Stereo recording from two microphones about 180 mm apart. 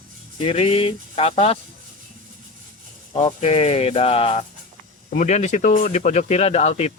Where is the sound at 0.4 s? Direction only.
30° left (ahead or behind).